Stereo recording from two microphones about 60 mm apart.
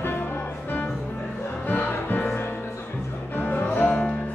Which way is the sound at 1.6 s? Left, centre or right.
Left.